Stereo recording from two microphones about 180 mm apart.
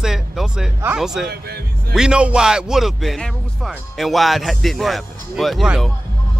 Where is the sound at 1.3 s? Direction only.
65° right (ahead or behind).